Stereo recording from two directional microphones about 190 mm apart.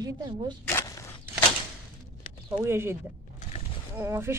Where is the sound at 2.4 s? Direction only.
15° right (ahead or behind).